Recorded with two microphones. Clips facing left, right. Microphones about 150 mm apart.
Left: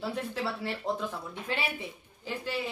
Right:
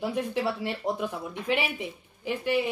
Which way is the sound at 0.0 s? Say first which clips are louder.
Right 5 dB; 15° right (ahead or behind).